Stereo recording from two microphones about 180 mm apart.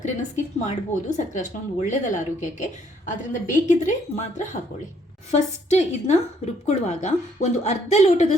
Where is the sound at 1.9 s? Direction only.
45° left (ahead or behind).